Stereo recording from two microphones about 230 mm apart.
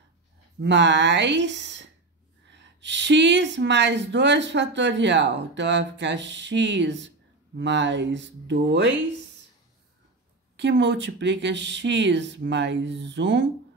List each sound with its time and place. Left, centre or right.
0.6 s speech: right
10.5 s speech: right